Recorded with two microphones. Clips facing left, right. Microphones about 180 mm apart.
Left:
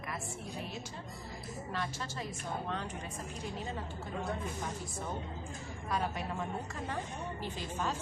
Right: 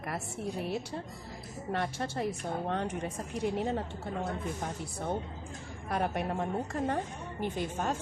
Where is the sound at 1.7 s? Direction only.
60° right (ahead or behind).